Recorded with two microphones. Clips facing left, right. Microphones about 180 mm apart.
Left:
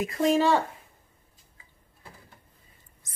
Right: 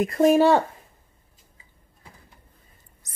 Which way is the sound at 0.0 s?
55° right (ahead or behind).